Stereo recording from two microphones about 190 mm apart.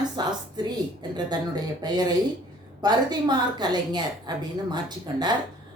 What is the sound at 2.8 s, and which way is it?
Speech, 20° right (ahead or behind).